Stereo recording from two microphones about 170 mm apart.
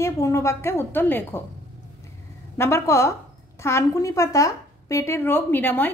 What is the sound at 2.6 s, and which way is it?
A woman's voice, 15° left (ahead or behind).